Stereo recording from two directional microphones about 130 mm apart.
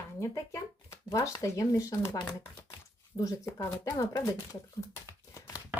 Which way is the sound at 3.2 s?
25° left (ahead or behind).